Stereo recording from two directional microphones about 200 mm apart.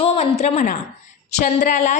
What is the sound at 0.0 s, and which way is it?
A woman's voice, 30° left (ahead or behind).